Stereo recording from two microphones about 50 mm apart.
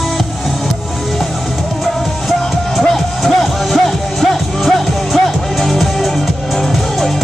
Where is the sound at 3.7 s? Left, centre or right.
Centre.